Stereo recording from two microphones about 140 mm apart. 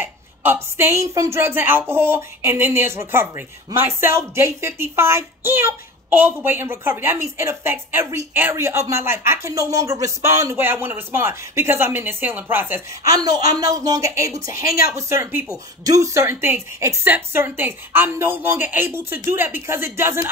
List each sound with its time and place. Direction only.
0.0 s a woman's voice: 15° right (ahead or behind)
13.1 s a woman's voice: 25° right (ahead or behind)